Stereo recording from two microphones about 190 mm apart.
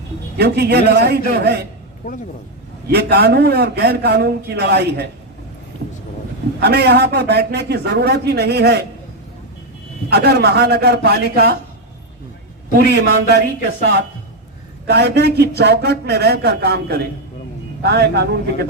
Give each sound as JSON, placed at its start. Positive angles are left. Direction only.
{"t": 0.3, "sound": "a man's voice", "side_deg": -60}
{"t": 2.0, "sound": "speech", "side_deg": 40}
{"t": 2.8, "sound": "a man's voice", "side_deg": -60}
{"t": 6.6, "sound": "a man's voice", "side_deg": -60}
{"t": 10.1, "sound": "a man's voice", "side_deg": -55}
{"t": 12.9, "sound": "a man's voice", "side_deg": -60}